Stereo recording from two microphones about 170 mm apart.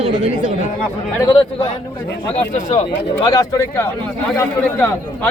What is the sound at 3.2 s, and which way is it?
A man's voice, 20° left (ahead or behind).